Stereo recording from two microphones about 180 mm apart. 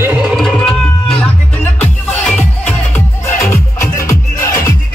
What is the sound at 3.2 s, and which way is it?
Music, 15° left (ahead or behind).